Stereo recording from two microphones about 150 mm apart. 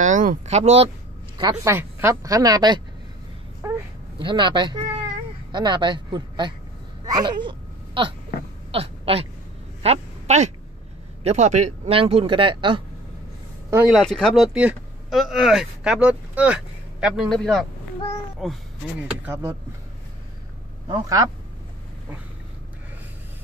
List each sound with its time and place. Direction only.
0.0 s speech: 60° right (ahead or behind)
1.4 s speech: 25° right (ahead or behind)
3.6 s a sound: 20° right (ahead or behind)
4.2 s speech: 30° right (ahead or behind)
8.7 s a sound: 40° right (ahead or behind)
9.8 s speech: 50° right (ahead or behind); by 12.8 s 35° right (ahead or behind)
13.8 s speech: centre (ahead or behind)
19.2 s speech: 15° right (ahead or behind)
20.8 s a man's voice: 25° right (ahead or behind)